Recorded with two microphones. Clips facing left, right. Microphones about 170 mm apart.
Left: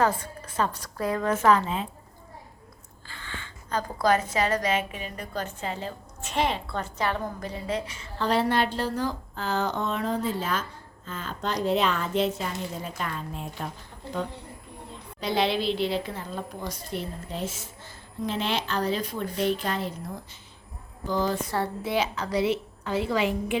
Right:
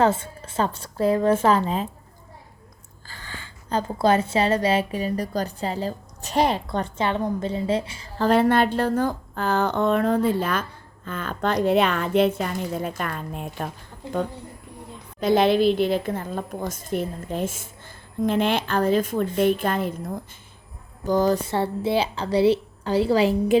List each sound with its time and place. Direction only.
0.0 s a woman's voice: 25° right (ahead or behind)
3.1 s a woman's voice: 40° right (ahead or behind)
8.3 s a woman's voice: 55° right (ahead or behind)
15.2 s a woman's voice: 50° right (ahead or behind)
21.1 s a woman's voice: 45° right (ahead or behind)
21.5 s a woman's voice: 30° right (ahead or behind)